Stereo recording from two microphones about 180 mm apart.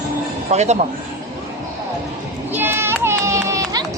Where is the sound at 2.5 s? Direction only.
10° right (ahead or behind).